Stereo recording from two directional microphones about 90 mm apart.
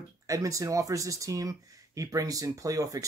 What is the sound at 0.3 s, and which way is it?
Speech, 40° right (ahead or behind).